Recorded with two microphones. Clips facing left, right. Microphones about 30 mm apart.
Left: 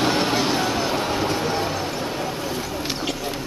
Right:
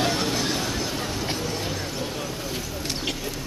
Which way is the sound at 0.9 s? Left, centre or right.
Left.